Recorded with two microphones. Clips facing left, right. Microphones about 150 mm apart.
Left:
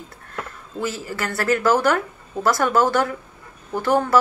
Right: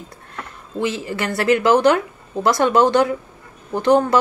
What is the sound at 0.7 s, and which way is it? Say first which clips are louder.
Speech: right 4 dB; 20° right (ahead or behind).